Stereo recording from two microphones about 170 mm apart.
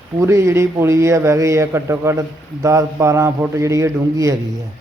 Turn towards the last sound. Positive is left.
turn(degrees=-20)  # may be behind; listen again after turning